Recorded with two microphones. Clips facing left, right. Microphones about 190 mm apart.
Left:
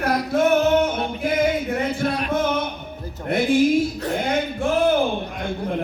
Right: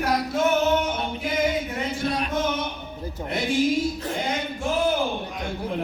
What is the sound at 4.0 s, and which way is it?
Speech, 60° left (ahead or behind).